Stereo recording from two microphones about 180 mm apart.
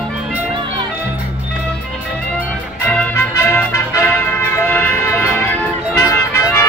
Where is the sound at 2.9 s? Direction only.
10° left (ahead or behind).